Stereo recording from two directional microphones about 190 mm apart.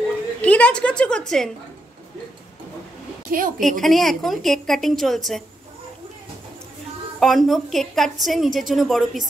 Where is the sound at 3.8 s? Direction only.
Centre (ahead or behind).